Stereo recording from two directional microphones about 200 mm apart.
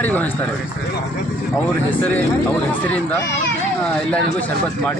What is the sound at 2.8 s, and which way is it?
Speech, 10° left (ahead or behind).